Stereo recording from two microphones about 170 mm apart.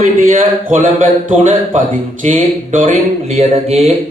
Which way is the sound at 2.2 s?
50° right (ahead or behind).